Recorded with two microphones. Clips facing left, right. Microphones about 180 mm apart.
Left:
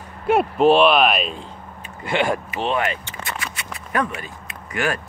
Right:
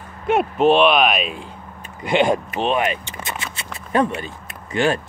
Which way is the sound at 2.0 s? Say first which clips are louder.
Right 4 dB; 20° right (ahead or behind).